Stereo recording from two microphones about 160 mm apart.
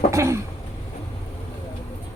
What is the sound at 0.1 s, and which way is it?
Cough, 15° right (ahead or behind).